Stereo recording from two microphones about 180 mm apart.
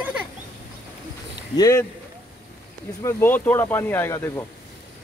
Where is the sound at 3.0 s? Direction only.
15° left (ahead or behind).